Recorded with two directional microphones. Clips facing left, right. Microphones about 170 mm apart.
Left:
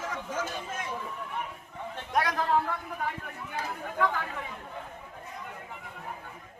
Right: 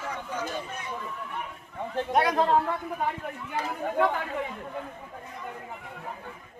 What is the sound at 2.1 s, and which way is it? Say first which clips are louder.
Speech: right 4 dB; 25° right (ahead or behind).